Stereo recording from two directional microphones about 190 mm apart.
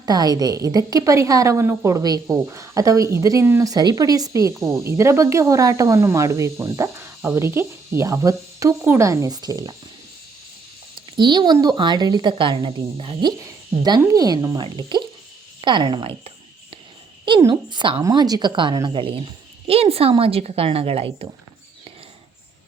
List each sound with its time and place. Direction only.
0.0 s a woman's voice: 20° right (ahead or behind)
10.9 s a woman's voice: 25° right (ahead or behind)